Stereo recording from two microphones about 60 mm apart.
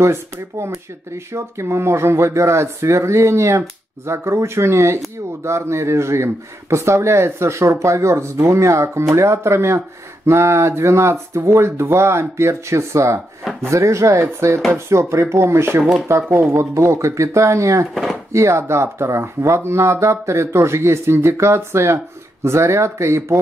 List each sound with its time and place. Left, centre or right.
0.0 s speech: right